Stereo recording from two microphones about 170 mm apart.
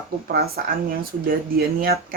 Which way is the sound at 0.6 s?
60° right (ahead or behind).